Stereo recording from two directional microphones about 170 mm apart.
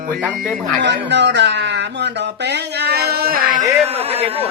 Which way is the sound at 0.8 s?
90° right.